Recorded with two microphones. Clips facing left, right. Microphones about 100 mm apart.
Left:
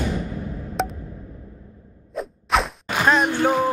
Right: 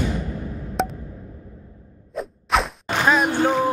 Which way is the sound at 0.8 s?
Centre (ahead or behind).